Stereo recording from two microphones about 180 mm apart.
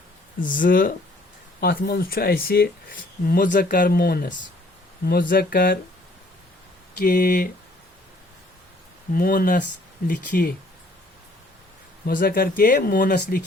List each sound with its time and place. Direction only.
0.3 s speech: 50° left (ahead or behind)
7.0 s speech: 55° left (ahead or behind)
9.1 s speech: 55° left (ahead or behind)
12.0 s speech: 55° left (ahead or behind)